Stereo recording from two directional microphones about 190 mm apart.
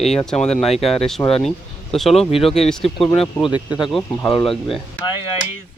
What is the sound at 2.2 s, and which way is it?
Speech, 30° left (ahead or behind).